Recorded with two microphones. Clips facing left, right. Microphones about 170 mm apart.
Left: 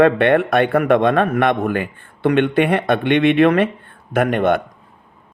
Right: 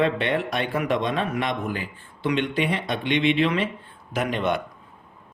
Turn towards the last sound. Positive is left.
turn(degrees=55)  # may be behind; listen again after turning